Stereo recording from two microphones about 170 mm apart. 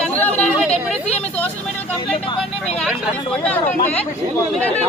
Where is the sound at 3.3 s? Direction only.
5° left (ahead or behind).